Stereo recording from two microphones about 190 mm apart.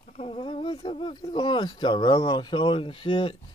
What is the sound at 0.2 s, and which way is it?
Speech, 30° left (ahead or behind).